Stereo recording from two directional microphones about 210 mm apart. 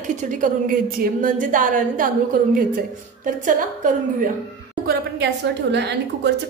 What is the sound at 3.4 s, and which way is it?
Speech, 40° right (ahead or behind).